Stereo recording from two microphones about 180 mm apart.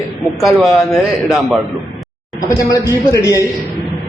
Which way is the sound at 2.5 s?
20° left (ahead or behind).